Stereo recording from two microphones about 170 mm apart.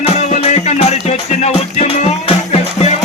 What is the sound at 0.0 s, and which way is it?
Music, 40° left (ahead or behind).